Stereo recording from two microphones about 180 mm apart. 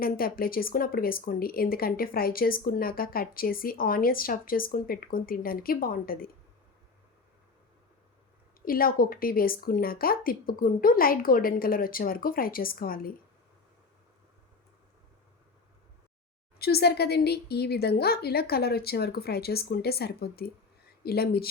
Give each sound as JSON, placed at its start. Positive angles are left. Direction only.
{"t": 0.0, "sound": "speech", "side_deg": 55}
{"t": 8.6, "sound": "speech", "side_deg": 55}
{"t": 16.6, "sound": "speech", "side_deg": 60}